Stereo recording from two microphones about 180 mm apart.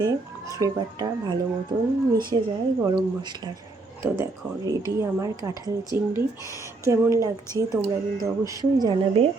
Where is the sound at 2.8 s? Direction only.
25° right (ahead or behind).